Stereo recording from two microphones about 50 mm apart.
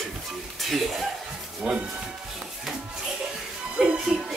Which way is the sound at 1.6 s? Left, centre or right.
Centre.